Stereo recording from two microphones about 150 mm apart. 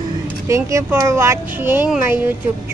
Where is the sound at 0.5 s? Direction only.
20° right (ahead or behind).